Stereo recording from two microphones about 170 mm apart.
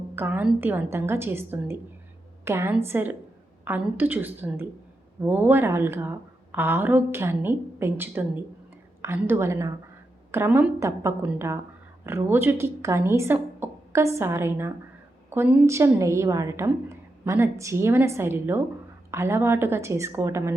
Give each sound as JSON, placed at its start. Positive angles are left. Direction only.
{"t": 0.2, "sound": "a woman's voice", "side_deg": -10}